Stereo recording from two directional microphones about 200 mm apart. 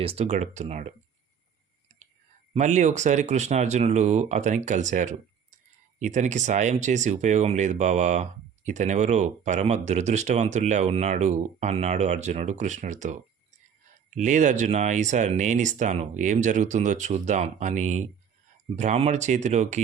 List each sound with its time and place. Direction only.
0.0 s speech: 30° right (ahead or behind)
2.5 s speech: 35° right (ahead or behind)